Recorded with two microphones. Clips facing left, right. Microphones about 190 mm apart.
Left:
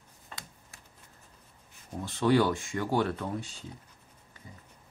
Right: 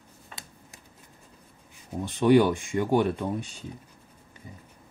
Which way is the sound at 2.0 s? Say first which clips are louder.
Right 5 dB; 15° right (ahead or behind).